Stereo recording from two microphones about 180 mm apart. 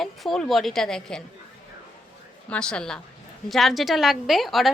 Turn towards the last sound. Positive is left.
turn(degrees=0)  # may be behind; listen again after turning